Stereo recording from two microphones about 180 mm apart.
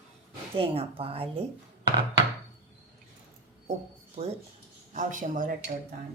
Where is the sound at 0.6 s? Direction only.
30° right (ahead or behind).